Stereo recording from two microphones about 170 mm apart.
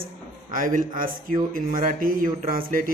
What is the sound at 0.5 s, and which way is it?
Speech, 55° right (ahead or behind).